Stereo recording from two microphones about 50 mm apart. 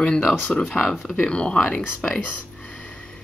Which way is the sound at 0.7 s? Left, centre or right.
Centre.